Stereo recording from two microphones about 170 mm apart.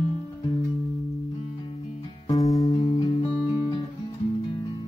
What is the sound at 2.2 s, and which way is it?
Music, 20° left (ahead or behind).